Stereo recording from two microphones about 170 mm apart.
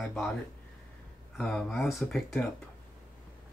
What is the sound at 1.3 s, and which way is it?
Speech, centre (ahead or behind).